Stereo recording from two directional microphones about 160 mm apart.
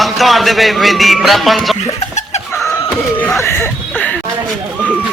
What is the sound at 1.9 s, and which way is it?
Laughter, 45° left (ahead or behind).